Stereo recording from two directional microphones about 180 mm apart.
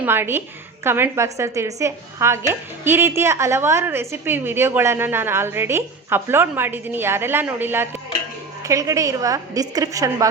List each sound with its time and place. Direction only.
0.0 s a woman's voice: 10° right (ahead or behind)